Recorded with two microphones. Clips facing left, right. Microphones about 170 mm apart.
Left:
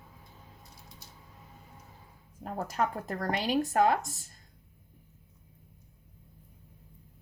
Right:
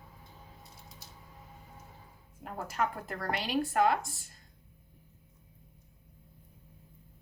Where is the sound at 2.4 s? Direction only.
40° left (ahead or behind).